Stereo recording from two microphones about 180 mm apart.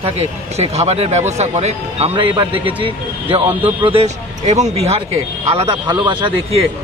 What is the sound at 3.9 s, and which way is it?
Speech, 35° right (ahead or behind).